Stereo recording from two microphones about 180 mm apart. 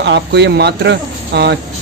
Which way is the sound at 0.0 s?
70° right (ahead or behind).